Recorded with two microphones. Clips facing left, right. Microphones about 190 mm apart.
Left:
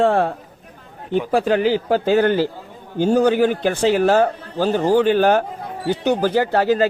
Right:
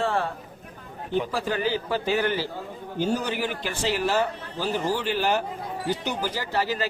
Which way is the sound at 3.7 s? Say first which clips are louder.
Left 9 dB; 55° left (ahead or behind).